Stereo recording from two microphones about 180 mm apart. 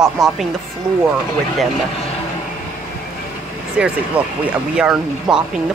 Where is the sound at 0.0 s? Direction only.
Centre (ahead or behind).